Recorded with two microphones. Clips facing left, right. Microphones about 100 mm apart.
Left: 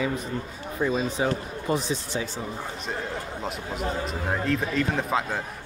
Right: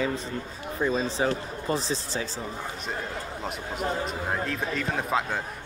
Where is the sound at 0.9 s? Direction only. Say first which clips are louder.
Even; 35° right (ahead or behind).